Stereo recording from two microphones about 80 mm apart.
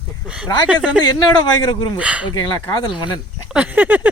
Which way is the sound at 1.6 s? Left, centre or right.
Left.